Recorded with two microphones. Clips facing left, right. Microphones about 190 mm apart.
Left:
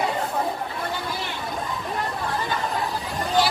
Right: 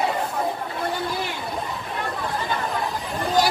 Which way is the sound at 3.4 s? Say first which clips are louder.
Right 1 dB; 45° right (ahead or behind).